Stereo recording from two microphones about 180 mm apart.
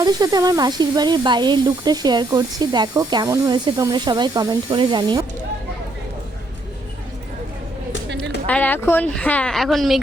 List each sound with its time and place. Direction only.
0.0 s speech: 20° right (ahead or behind)
8.4 s a woman's voice: 10° left (ahead or behind)